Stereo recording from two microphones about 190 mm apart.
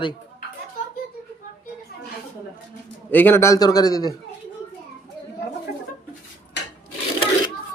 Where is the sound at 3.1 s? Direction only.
10° left (ahead or behind).